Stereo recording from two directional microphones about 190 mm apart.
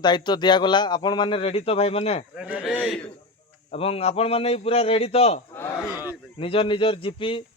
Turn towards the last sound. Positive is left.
turn(degrees=25)  # may be behind; listen again after turning